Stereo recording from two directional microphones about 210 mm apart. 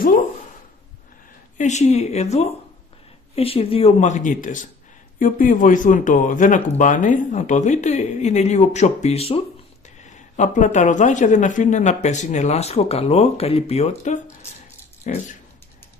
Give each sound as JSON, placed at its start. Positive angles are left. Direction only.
{"t": 1.6, "sound": "a man's voice", "side_deg": 35}